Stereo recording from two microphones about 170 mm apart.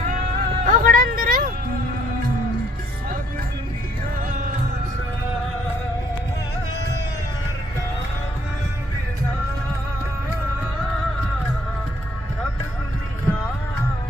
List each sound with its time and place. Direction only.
0.0 s music: 55° right (ahead or behind)